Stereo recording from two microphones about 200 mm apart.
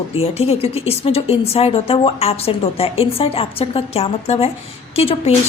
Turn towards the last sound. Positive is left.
turn(degrees=30)  # may be behind; listen again after turning